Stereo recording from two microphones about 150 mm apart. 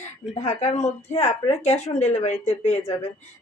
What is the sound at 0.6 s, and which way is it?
Speech, 50° left (ahead or behind).